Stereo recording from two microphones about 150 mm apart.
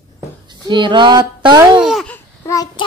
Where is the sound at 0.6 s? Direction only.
30° right (ahead or behind).